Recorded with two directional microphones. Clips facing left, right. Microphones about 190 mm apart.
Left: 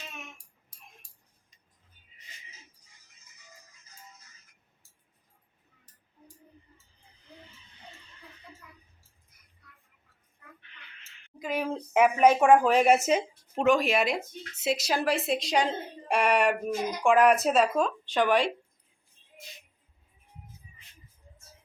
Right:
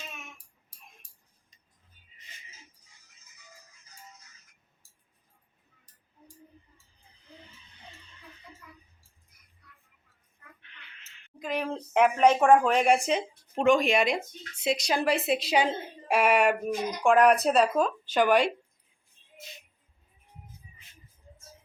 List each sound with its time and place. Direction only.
11.3 s a woman's voice: 5° left (ahead or behind)